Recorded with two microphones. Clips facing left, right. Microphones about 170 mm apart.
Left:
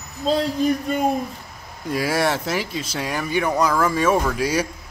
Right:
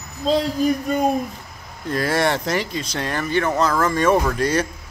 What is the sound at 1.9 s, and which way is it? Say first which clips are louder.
A man's voice: right 1 dB; 5° left (ahead or behind).